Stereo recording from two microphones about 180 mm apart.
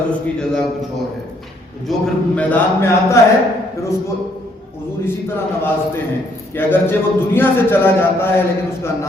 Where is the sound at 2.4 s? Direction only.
10° left (ahead or behind).